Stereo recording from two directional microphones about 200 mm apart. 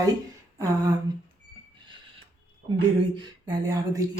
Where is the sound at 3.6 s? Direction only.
15° right (ahead or behind).